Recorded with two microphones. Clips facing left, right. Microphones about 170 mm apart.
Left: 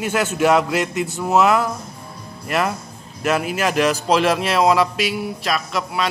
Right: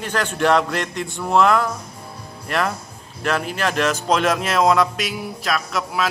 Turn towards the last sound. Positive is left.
turn(degrees=0)  # may be behind; listen again after turning